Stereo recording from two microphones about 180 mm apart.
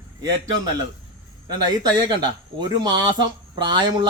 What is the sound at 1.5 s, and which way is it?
Speech, 25° right (ahead or behind).